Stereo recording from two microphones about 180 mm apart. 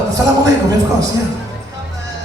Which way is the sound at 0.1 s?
20° right (ahead or behind).